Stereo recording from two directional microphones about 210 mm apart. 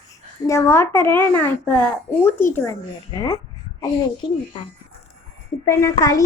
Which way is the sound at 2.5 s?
10° left (ahead or behind).